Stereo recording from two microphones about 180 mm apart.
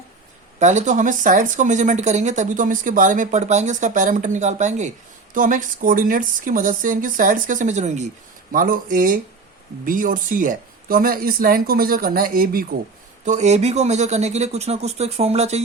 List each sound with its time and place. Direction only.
0.6 s speech: 40° right (ahead or behind)
8.5 s speech: 50° right (ahead or behind)
13.2 s speech: 40° right (ahead or behind)